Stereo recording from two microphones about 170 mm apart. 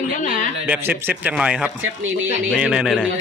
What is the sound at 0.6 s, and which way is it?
A man's voice, 10° right (ahead or behind).